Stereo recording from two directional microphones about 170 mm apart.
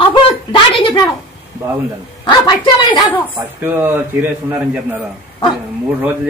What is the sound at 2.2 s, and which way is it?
Speech, 25° left (ahead or behind).